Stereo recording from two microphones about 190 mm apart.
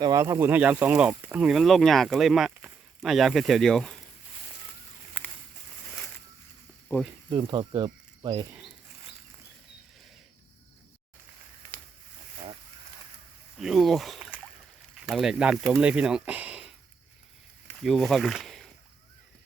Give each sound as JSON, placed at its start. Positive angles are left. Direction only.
{"t": 0.0, "sound": "speech", "side_deg": -20}
{"t": 6.9, "sound": "speech", "side_deg": 15}
{"t": 7.3, "sound": "speech", "side_deg": -25}
{"t": 11.7, "sound": "a sound", "side_deg": -45}
{"t": 13.6, "sound": "speech", "side_deg": 0}